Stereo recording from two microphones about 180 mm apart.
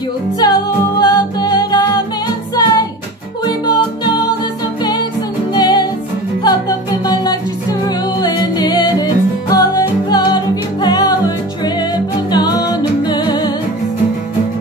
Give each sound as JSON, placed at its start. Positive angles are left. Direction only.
{"t": 0.4, "sound": "music", "side_deg": 20}
{"t": 5.5, "sound": "music", "side_deg": 25}
{"t": 8.2, "sound": "music", "side_deg": 20}